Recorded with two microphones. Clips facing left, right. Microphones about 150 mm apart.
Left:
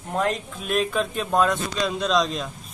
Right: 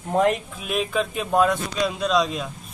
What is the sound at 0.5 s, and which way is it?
Speech, 5° right (ahead or behind).